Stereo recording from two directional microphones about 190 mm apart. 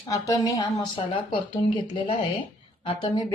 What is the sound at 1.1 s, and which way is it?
Speech, 30° left (ahead or behind).